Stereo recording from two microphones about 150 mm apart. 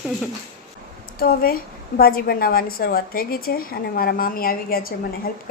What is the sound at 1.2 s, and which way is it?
A woman's voice, 80° left.